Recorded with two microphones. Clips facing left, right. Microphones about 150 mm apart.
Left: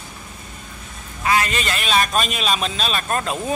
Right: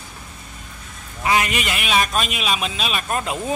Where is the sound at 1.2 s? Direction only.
15° right (ahead or behind).